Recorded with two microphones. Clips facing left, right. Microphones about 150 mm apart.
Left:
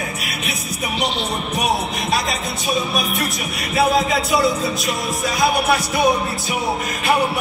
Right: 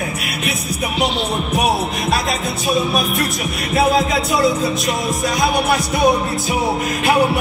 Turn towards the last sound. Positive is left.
turn(degrees=0)  # may be behind; listen again after turning